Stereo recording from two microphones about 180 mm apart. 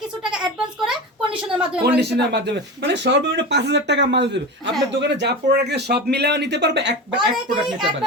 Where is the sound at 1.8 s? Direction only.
65° right (ahead or behind).